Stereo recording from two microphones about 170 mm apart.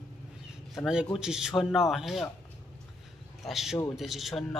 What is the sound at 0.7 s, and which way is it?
Speech, 5° right (ahead or behind).